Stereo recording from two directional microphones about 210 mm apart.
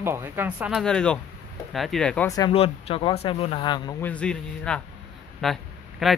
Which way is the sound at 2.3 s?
20° left (ahead or behind).